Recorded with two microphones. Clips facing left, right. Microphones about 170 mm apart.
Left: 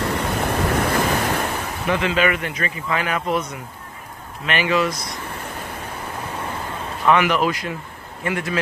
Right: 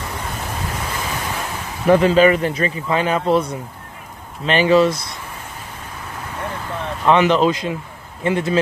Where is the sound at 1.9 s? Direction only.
40° right (ahead or behind).